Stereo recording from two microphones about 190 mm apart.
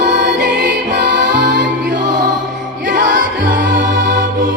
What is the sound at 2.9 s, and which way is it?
Music, 45° right (ahead or behind).